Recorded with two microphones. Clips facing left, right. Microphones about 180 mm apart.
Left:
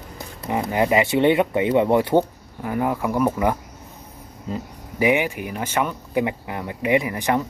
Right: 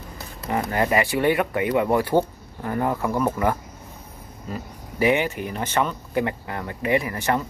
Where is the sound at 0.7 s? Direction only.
15° left (ahead or behind).